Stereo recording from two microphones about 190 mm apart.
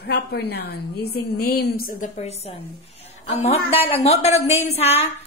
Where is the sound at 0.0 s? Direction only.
55° left (ahead or behind).